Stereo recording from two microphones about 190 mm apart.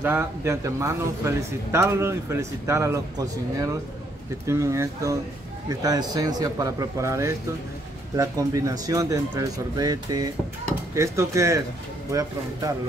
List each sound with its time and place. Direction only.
0.0 s speech: 10° right (ahead or behind)